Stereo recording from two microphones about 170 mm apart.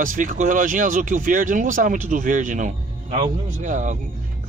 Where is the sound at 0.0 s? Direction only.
50° right (ahead or behind).